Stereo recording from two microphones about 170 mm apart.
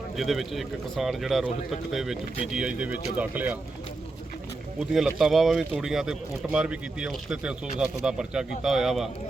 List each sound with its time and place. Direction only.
0.2 s speech: centre (ahead or behind)
4.8 s speech: centre (ahead or behind)